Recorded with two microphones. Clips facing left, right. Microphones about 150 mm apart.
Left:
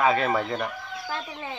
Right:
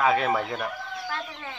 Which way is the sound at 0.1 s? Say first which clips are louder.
Even; centre (ahead or behind).